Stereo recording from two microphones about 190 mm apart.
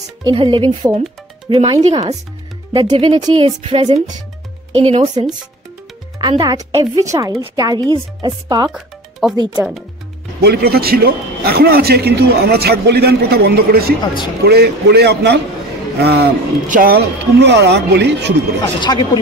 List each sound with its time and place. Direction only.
0.2 s speech: 25° right (ahead or behind)
8.6 s music: 5° right (ahead or behind)
9.4 s speech: 20° right (ahead or behind)
10.4 s a man's voice: 55° right (ahead or behind)
16.6 s a man's voice: 45° right (ahead or behind); by 18.3 s 60° right (ahead or behind)
18.8 s speech: 25° left (ahead or behind)